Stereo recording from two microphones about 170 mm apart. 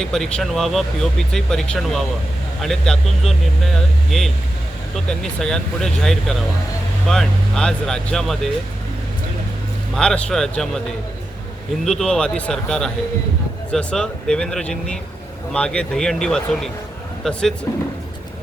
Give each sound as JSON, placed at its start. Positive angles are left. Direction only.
{"t": 0.0, "sound": "speech", "side_deg": 5}
{"t": 9.9, "sound": "speech", "side_deg": 5}
{"t": 11.9, "sound": "speech", "side_deg": 5}
{"t": 17.7, "sound": "speech", "side_deg": 15}